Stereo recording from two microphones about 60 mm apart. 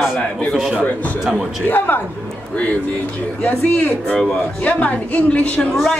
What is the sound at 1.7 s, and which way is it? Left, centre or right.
Speech, left.